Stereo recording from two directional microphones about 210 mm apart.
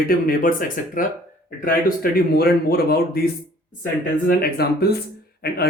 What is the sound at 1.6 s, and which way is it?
A man's voice, 45° left (ahead or behind).